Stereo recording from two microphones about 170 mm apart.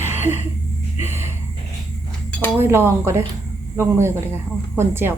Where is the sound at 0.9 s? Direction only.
15° right (ahead or behind).